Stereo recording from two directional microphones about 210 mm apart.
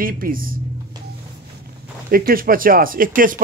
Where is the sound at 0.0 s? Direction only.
45° right (ahead or behind).